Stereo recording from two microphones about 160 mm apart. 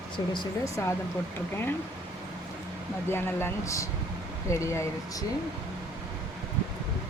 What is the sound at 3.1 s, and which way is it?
Speech, 15° left (ahead or behind).